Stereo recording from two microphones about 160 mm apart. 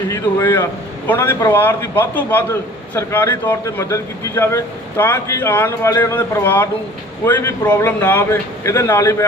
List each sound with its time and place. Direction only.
0.1 s speech: 15° left (ahead or behind)